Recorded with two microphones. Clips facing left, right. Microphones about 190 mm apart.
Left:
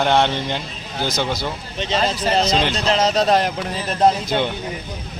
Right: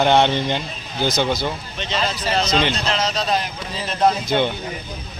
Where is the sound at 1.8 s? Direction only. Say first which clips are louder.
Left 4 dB; 35° left (ahead or behind); by 3.5 s 65° left (ahead or behind).